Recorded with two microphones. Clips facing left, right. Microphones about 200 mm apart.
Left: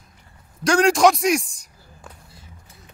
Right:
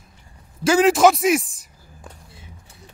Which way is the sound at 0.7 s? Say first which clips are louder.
Right 1 dB; 5° right (ahead or behind).